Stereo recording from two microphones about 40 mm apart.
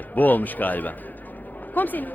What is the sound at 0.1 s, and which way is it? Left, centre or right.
A man's voice, left.